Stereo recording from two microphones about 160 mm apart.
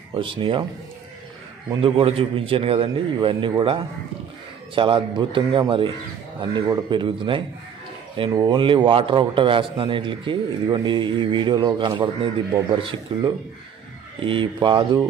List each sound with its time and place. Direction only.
0.1 s a man's voice: 30° right (ahead or behind)
1.8 s a man's voice: 35° right (ahead or behind)